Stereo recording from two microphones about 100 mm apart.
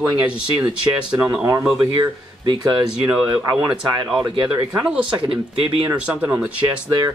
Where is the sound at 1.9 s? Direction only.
45° right (ahead or behind).